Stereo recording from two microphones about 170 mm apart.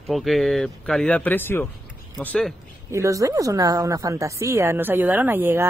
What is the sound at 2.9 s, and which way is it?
Speech, 20° right (ahead or behind).